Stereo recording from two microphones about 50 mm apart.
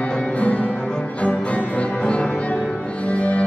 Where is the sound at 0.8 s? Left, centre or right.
Centre.